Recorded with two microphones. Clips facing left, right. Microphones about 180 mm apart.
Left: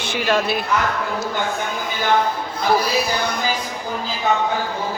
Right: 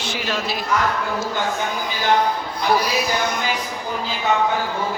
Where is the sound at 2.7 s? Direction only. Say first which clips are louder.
Left 1 dB; 35° left (ahead or behind).